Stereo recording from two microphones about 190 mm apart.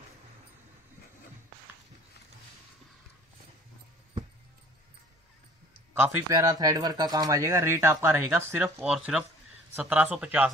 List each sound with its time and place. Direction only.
5.9 s speech: 10° right (ahead or behind)